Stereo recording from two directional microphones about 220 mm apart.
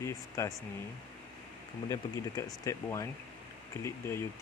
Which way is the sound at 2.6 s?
15° left (ahead or behind).